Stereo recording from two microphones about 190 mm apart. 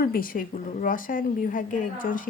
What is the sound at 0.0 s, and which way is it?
A woman's voice, 50° left (ahead or behind).